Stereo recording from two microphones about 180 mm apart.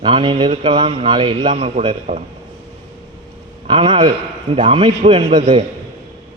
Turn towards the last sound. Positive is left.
turn(degrees=-30)  # may be behind; listen again after turning